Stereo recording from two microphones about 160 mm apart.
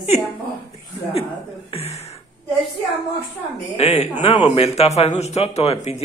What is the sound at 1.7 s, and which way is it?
Speech, 40° left (ahead or behind).